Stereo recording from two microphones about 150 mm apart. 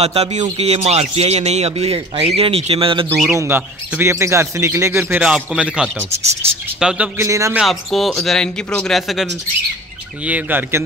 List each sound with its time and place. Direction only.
0.0 s speech: 45° right (ahead or behind)
3.3 s speech: 15° right (ahead or behind)
5.2 s speech: 5° right (ahead or behind)
7.2 s a man's voice: 20° right (ahead or behind)
7.5 s speech: centre (ahead or behind)
10.2 s speech: 10° right (ahead or behind)